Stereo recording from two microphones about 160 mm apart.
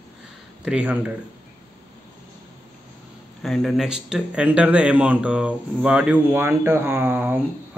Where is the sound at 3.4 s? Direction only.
Centre (ahead or behind).